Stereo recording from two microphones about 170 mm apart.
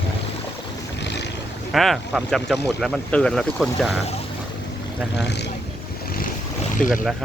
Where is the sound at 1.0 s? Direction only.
90° left.